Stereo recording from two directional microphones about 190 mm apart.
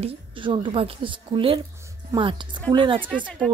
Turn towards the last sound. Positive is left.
turn(degrees=0)  # may be behind; listen again after turning